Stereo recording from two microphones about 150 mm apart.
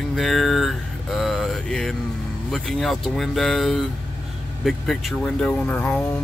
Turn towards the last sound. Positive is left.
turn(degrees=10)  # may be behind; listen again after turning